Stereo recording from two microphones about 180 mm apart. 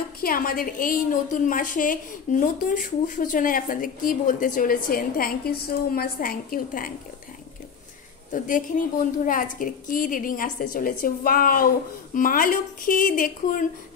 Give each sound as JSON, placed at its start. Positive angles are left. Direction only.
{"t": 0.2, "sound": "a woman's voice", "side_deg": 50}
{"t": 8.3, "sound": "a woman's voice", "side_deg": 45}